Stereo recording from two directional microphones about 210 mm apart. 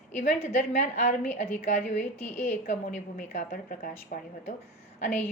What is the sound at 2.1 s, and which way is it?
Speech, 10° left (ahead or behind).